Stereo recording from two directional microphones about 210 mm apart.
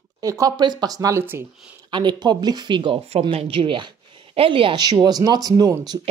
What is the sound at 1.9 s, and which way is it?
Speech, 20° right (ahead or behind).